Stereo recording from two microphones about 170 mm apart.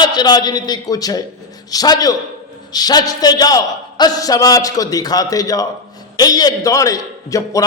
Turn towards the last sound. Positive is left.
turn(degrees=20)  # may be behind; listen again after turning